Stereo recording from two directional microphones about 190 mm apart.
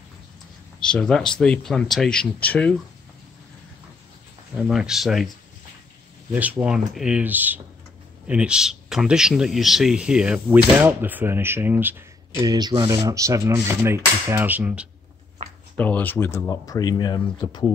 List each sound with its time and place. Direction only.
0.7 s speech: 5° left (ahead or behind)
4.6 s speech: centre (ahead or behind)
6.3 s speech: 5° right (ahead or behind)
15.8 s speech: 10° left (ahead or behind)